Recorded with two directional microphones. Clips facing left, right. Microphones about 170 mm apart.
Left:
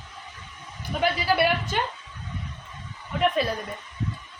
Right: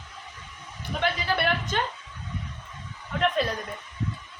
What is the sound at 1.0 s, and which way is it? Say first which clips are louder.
Speech: left 4 dB; 10° left (ahead or behind).